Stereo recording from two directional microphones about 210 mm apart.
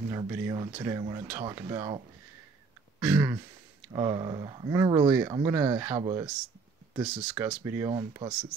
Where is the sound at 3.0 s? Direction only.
10° right (ahead or behind).